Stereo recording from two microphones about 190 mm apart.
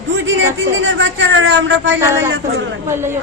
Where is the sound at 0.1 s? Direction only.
80° right.